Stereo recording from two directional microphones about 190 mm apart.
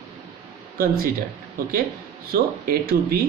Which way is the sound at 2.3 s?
50° right (ahead or behind).